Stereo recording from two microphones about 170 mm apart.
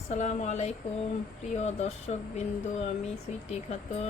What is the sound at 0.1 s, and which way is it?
Speech, 45° left (ahead or behind).